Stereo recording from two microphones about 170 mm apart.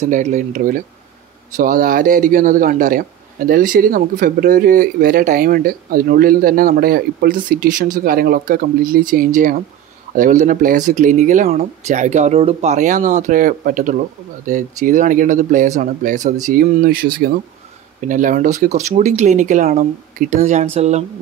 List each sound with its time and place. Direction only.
0.0 s speech: 45° right (ahead or behind); by 17.3 s 60° right (ahead or behind)
18.0 s speech: 50° right (ahead or behind)